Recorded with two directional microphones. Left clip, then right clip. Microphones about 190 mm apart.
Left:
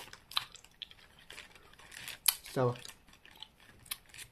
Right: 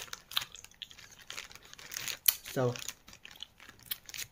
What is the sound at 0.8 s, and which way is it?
Drip, centre (ahead or behind).